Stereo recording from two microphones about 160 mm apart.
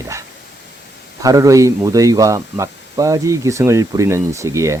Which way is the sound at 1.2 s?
20° right (ahead or behind).